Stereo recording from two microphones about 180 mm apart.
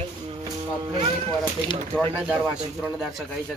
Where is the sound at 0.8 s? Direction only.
25° right (ahead or behind).